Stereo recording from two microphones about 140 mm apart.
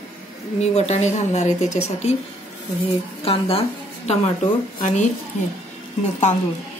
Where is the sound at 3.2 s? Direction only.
45° left (ahead or behind).